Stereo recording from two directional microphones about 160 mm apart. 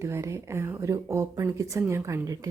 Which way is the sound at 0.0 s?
20° right (ahead or behind).